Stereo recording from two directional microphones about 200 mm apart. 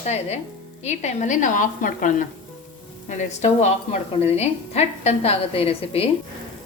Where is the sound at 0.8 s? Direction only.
35° left (ahead or behind).